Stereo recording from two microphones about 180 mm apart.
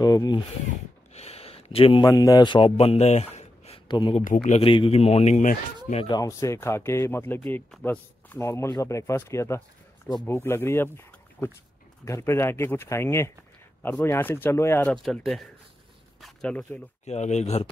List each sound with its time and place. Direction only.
0.0 s speech: 20° left (ahead or behind)
1.1 s a man's voice: 35° left (ahead or behind)
6.0 s speech: 20° left (ahead or behind)
12.0 s speech: 15° left (ahead or behind)
15.0 s speech: centre (ahead or behind)
17.0 s speech: 40° left (ahead or behind)